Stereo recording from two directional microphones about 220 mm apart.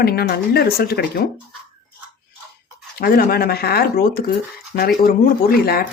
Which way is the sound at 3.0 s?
45° left (ahead or behind).